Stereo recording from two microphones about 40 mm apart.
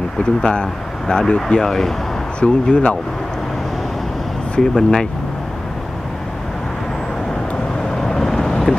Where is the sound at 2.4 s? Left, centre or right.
Left.